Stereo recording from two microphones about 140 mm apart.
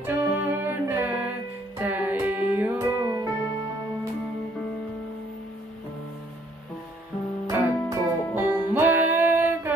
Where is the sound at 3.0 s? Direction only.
25° right (ahead or behind).